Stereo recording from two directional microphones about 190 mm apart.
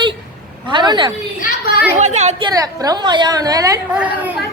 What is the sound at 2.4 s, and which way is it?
A woman's voice, 20° right (ahead or behind).